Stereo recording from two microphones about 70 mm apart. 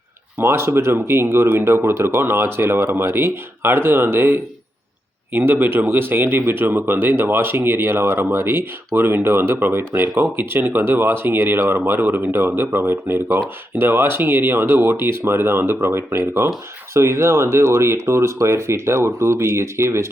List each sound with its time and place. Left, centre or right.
0.4 s speech: right